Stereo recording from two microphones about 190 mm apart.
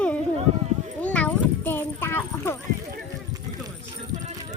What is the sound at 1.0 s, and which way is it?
Clip-clop, 5° left (ahead or behind).